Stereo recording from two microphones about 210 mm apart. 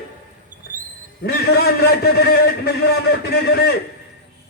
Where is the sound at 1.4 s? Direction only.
50° left (ahead or behind).